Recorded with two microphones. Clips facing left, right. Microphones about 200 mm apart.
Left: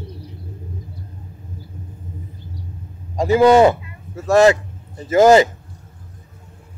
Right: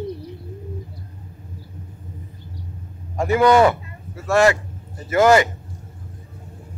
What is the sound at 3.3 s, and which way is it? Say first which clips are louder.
Speech: left 3 dB; 25° left (ahead or behind).